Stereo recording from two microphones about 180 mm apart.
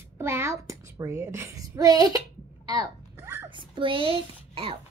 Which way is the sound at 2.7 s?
20° right (ahead or behind).